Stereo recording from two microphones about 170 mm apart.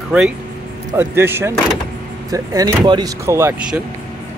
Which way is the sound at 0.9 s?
15° right (ahead or behind).